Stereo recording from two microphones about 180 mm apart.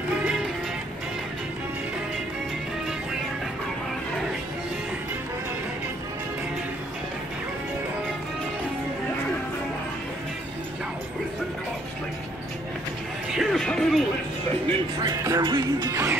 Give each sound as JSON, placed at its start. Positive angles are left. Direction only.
{"t": 13.3, "sound": "music", "side_deg": 0}
{"t": 15.0, "sound": "music", "side_deg": -20}